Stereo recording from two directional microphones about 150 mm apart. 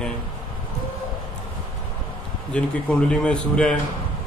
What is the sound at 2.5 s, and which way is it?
A man's voice, 5° left (ahead or behind).